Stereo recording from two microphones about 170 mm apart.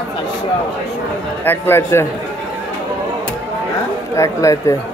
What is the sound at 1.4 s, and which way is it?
Speech, 15° left (ahead or behind).